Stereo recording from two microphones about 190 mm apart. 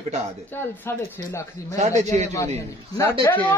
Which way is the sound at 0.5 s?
15° left (ahead or behind).